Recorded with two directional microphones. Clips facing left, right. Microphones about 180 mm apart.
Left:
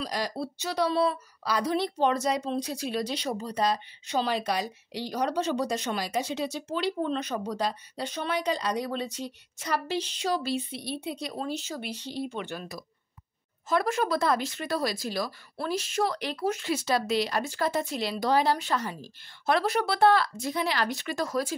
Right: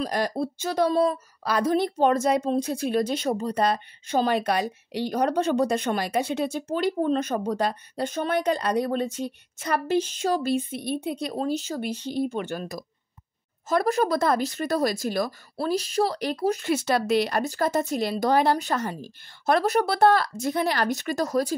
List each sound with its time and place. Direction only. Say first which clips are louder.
0.0 s a woman's voice: right 6 dB; 50° right (ahead or behind)
15.5 s speech: right 5 dB; 35° right (ahead or behind)
16.6 s a woman's voice: right 4 dB; 55° right (ahead or behind)